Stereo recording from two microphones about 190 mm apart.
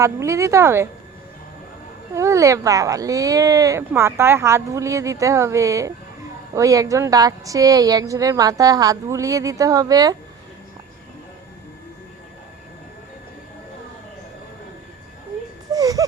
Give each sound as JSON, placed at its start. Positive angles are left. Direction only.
{"t": 0.0, "sound": "speech", "side_deg": -15}
{"t": 2.1, "sound": "speech", "side_deg": -15}
{"t": 15.7, "sound": "whimper", "side_deg": -20}